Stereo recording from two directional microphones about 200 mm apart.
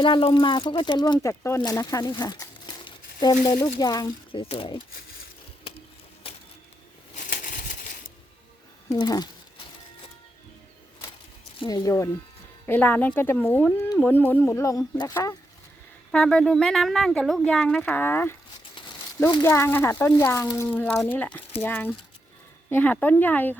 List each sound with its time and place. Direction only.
0.0 s speech: 25° left (ahead or behind)
7.2 s a sound: 40° left (ahead or behind)
8.9 s speech: 20° left (ahead or behind)
11.6 s speech: 20° left (ahead or behind)
16.1 s speech: 5° left (ahead or behind)